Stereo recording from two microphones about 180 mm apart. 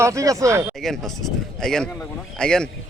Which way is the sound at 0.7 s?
Centre (ahead or behind).